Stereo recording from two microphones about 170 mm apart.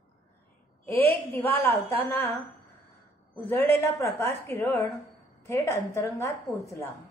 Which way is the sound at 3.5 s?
15° left (ahead or behind).